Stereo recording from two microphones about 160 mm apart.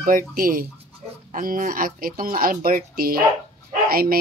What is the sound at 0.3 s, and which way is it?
Speech, 60° right (ahead or behind).